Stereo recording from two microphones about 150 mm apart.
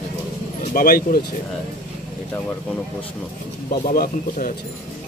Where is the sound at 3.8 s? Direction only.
75° left (ahead or behind).